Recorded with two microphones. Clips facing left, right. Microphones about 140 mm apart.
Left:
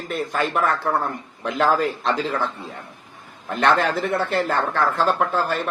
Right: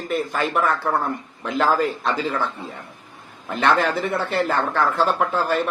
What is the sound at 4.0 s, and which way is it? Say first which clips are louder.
Speech: left 1 dB; 55° left (ahead or behind).